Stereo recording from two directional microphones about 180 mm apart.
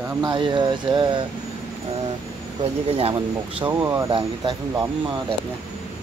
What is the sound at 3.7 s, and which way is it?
Speech, 15° right (ahead or behind).